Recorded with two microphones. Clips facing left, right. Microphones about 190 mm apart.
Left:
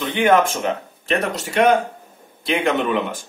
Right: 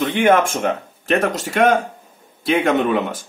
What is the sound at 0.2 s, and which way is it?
A man's voice, 50° right (ahead or behind).